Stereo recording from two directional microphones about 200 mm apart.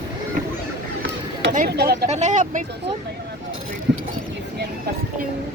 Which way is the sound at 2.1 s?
35° right (ahead or behind).